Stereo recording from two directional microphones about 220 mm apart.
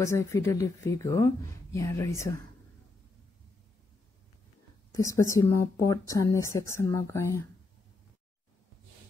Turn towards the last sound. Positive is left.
turn(degrees=10)  # may be behind; listen again after turning